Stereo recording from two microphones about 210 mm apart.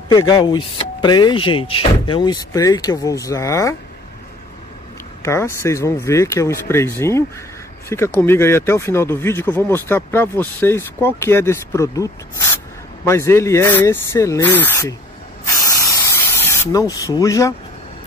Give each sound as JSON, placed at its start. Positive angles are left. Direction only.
{"t": 0.3, "sound": "speech", "side_deg": 20}
{"t": 5.2, "sound": "speech", "side_deg": 10}
{"t": 15.6, "sound": "spray", "side_deg": 15}